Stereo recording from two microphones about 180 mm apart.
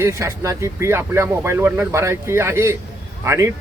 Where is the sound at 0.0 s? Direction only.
15° right (ahead or behind).